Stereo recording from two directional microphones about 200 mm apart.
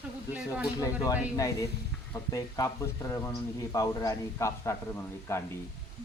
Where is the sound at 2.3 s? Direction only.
15° left (ahead or behind).